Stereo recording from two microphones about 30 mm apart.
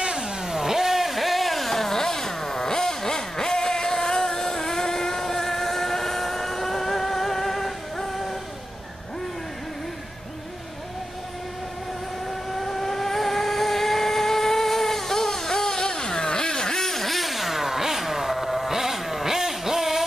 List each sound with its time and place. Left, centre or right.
0.0 s vehicle: right
0.5 s a sound: centre
12.5 s vehicle: centre